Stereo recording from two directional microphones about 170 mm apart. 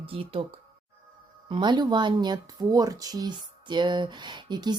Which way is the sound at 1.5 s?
25° right (ahead or behind).